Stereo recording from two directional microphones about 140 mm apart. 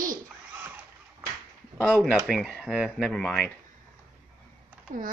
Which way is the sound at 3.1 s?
10° left (ahead or behind).